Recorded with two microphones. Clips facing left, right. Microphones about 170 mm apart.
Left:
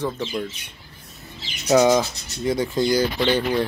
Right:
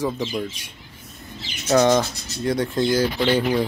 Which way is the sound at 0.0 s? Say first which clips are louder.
Right 1 dB; 10° right (ahead or behind).